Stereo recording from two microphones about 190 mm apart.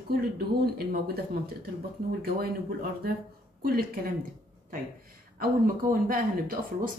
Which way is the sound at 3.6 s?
55° right (ahead or behind).